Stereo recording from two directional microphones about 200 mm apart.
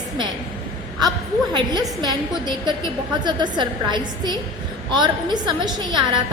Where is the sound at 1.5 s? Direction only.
20° right (ahead or behind).